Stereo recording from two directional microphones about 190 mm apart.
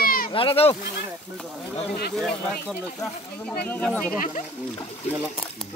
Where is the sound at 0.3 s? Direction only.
30° left (ahead or behind).